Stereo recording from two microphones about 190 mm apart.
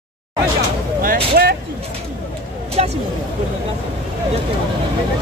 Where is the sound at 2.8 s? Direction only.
35° right (ahead or behind).